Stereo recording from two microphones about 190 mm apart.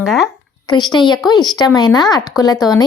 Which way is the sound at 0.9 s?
25° left (ahead or behind).